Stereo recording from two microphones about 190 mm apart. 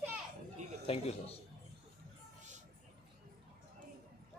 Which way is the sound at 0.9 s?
30° left (ahead or behind).